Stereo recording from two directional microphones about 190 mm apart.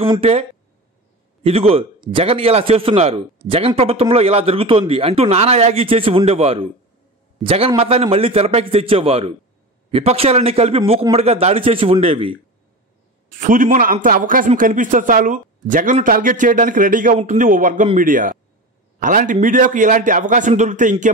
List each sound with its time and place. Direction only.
0.0 s a man's voice: 30° right (ahead or behind)
13.3 s a man's voice: 45° right (ahead or behind)